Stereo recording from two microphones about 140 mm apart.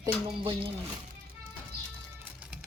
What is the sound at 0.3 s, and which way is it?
Speech, 35° right (ahead or behind).